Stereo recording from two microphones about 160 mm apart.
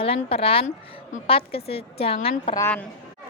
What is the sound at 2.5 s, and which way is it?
Speech, 15° left (ahead or behind).